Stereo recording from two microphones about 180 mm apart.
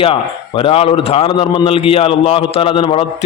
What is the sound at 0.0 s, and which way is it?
A man's voice, 30° left (ahead or behind).